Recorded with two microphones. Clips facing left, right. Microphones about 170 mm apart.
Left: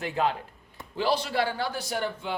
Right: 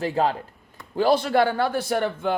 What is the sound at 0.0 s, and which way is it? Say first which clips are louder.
Speech: right 4 dB; 35° right (ahead or behind).